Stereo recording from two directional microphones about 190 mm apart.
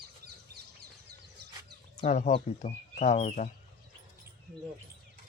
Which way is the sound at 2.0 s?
40° left (ahead or behind).